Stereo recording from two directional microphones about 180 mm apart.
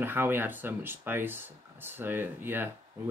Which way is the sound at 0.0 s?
10° right (ahead or behind).